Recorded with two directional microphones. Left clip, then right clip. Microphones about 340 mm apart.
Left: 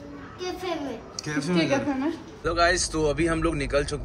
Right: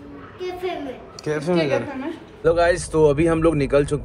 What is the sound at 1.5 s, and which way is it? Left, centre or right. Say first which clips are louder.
Speech: right 2 dB; left.